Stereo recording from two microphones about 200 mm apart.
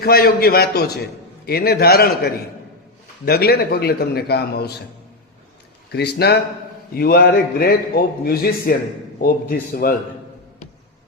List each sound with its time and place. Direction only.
0.0 s a man's voice: 50° left (ahead or behind)
5.9 s a man's voice: 55° left (ahead or behind)